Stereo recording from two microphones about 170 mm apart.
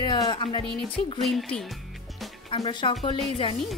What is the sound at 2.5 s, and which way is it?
Music, 25° left (ahead or behind).